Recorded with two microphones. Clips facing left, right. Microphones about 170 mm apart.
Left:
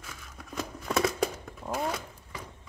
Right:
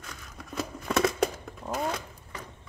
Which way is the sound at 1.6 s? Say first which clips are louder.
Right 1 dB; centre (ahead or behind).